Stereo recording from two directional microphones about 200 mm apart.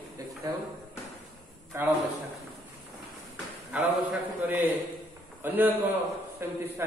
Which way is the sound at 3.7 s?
10° right (ahead or behind).